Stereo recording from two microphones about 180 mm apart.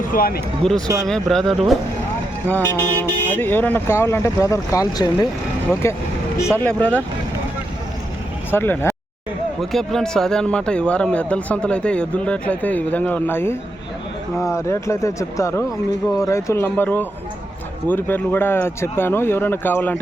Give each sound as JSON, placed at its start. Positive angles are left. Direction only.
{"t": 0.1, "sound": "speech", "side_deg": 55}
{"t": 0.6, "sound": "speech", "side_deg": 5}
{"t": 2.7, "sound": "speech", "side_deg": 10}
{"t": 8.4, "sound": "speech", "side_deg": 10}
{"t": 9.6, "sound": "speech", "side_deg": 0}